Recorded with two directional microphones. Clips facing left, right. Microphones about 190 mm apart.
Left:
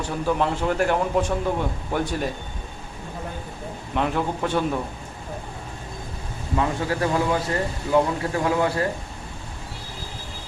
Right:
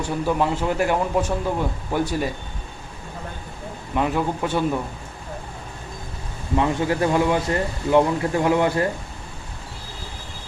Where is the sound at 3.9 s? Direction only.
5° right (ahead or behind).